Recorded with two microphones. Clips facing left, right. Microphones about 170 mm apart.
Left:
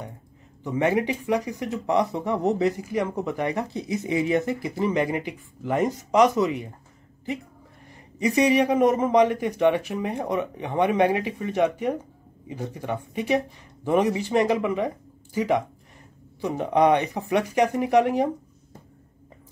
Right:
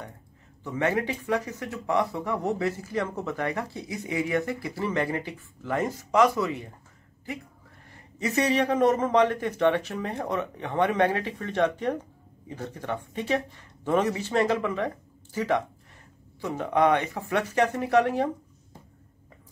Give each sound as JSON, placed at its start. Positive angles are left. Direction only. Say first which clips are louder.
{"t": 0.7, "sound": "speech", "louder": "left 4 dB", "side_deg": 15}
{"t": 7.9, "sound": "a man's voice", "louder": "left 4 dB", "side_deg": 15}